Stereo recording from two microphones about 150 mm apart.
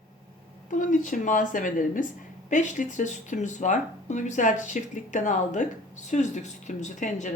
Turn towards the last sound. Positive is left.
turn(degrees=55)  # may be behind; listen again after turning